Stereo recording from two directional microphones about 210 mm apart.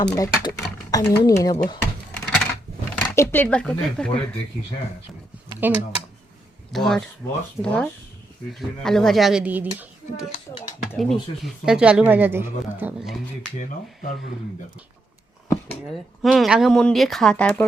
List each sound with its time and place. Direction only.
0.0 s speech: 20° left (ahead or behind)
2.1 s a sound: 5° left (ahead or behind)
3.0 s speech: 10° left (ahead or behind)
5.6 s speech: 10° right (ahead or behind)
6.7 s speech: centre (ahead or behind)
10.9 s speech: centre (ahead or behind)
13.6 s speech: 40° left (ahead or behind)
16.2 s speech: centre (ahead or behind)